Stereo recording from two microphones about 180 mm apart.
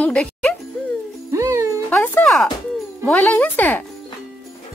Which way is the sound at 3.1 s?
10° left (ahead or behind).